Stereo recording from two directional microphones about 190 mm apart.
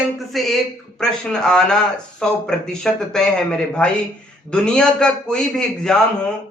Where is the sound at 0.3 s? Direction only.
Centre (ahead or behind).